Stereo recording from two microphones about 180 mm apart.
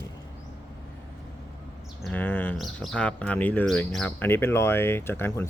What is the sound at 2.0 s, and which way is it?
Speech, 10° left (ahead or behind).